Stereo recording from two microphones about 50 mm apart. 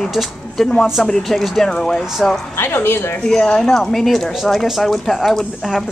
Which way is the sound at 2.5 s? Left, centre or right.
Left.